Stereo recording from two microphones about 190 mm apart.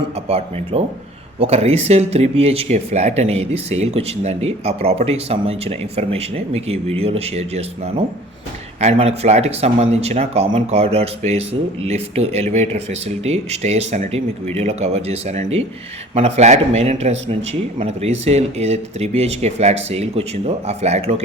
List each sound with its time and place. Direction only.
0.3 s speech: 30° right (ahead or behind)